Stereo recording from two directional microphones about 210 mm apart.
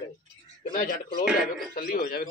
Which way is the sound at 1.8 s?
45° left (ahead or behind).